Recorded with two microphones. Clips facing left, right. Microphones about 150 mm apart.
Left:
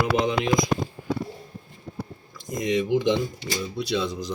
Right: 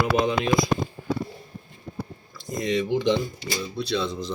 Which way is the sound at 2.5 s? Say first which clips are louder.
Left 1 dB; 15° left (ahead or behind).